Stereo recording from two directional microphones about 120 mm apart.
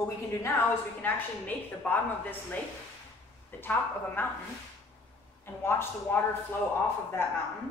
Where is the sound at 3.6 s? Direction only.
15° left (ahead or behind).